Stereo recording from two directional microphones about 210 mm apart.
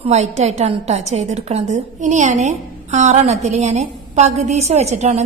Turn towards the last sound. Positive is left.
turn(degrees=-30)  # may be behind; listen again after turning